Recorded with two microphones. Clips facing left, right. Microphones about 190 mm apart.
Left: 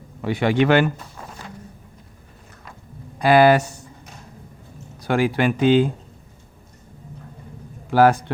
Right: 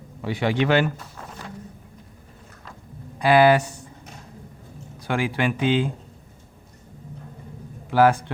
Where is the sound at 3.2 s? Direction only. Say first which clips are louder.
Left 2 dB; 45° left (ahead or behind).